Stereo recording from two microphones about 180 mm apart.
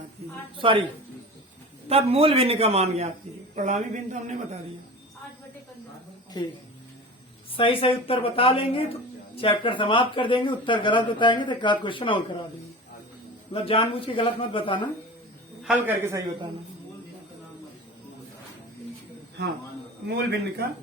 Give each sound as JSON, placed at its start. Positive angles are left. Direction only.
{"t": 0.6, "sound": "speech", "side_deg": -30}
{"t": 1.9, "sound": "a man's voice", "side_deg": -35}
{"t": 6.3, "sound": "speech", "side_deg": 25}
{"t": 7.5, "sound": "a woman's voice", "side_deg": 30}
{"t": 13.5, "sound": "speech", "side_deg": 30}
{"t": 15.9, "sound": "a man's voice", "side_deg": -15}
{"t": 20.1, "sound": "a man's voice", "side_deg": -70}